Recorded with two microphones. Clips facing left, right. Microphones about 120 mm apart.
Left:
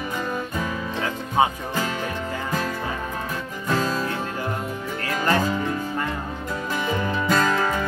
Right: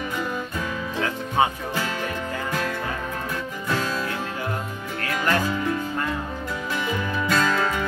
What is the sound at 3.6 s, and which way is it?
Music, 40° left (ahead or behind).